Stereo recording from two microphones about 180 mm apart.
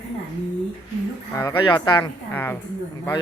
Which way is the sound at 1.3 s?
15° left (ahead or behind).